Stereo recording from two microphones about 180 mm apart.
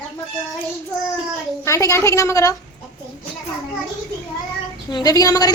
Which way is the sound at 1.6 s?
15° left (ahead or behind).